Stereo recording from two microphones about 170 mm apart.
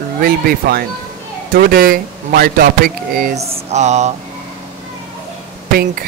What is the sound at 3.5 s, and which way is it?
Mantra, 40° right (ahead or behind).